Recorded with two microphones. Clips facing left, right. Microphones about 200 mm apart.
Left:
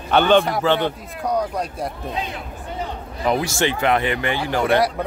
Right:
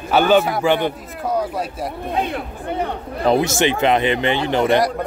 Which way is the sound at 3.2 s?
25° right (ahead or behind).